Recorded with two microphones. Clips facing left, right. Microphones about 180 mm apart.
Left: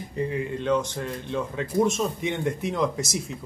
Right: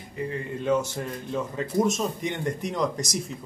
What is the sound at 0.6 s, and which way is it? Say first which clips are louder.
Speech: right 2 dB; 5° right (ahead or behind).